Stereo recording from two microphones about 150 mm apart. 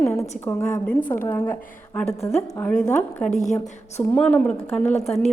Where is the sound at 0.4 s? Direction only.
10° left (ahead or behind).